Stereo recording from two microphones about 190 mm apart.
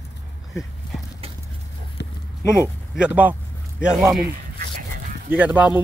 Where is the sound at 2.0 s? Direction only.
65° left (ahead or behind).